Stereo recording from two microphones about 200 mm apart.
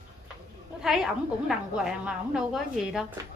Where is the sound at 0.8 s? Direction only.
Centre (ahead or behind).